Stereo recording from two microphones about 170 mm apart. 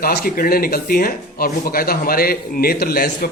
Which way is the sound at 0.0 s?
60° left (ahead or behind).